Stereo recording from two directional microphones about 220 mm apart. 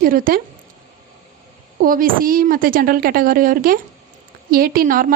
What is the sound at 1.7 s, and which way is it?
Speech, 40° right (ahead or behind).